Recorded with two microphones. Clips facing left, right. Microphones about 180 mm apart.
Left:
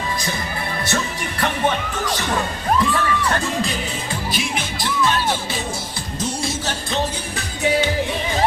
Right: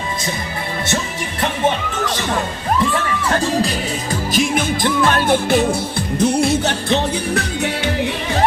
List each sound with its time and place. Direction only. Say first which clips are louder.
3.4 s music: right 5 dB; 35° right (ahead or behind); by 8.4 s 65° right (ahead or behind)